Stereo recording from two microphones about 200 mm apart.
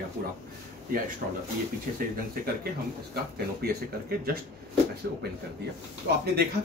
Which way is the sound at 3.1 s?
50° right (ahead or behind).